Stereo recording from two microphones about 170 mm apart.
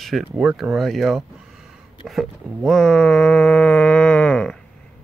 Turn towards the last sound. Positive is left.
turn(degrees=5)  # may be behind; listen again after turning